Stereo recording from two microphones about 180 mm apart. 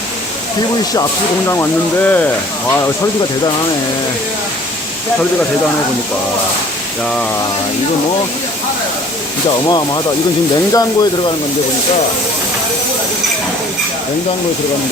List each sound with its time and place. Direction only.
1.5 s speech: 10° left (ahead or behind)
9.6 s speech: 20° left (ahead or behind)